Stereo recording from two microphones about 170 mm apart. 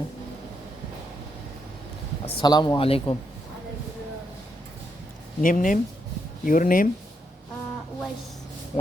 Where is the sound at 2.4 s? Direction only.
25° left (ahead or behind).